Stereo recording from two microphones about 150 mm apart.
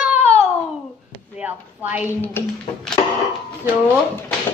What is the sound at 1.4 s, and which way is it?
Speech, 10° right (ahead or behind).